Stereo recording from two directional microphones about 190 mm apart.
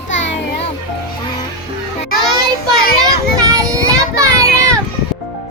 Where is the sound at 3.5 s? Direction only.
20° right (ahead or behind).